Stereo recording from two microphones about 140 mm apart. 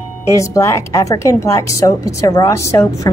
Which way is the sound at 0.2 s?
20° left (ahead or behind).